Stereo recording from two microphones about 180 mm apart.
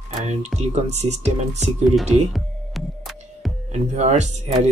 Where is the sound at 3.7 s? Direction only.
40° right (ahead or behind).